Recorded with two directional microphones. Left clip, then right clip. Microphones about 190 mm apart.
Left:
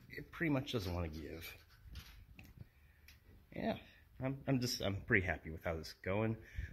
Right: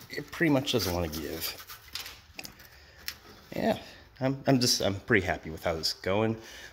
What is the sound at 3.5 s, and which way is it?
Speech, 20° right (ahead or behind).